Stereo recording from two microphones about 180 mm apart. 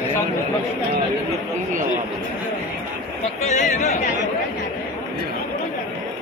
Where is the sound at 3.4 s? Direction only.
45° left (ahead or behind).